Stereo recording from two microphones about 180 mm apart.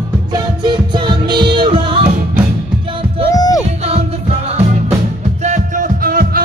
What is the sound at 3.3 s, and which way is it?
Music, 20° left (ahead or behind).